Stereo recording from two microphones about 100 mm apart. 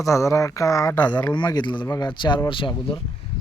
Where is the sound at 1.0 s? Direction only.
50° left (ahead or behind).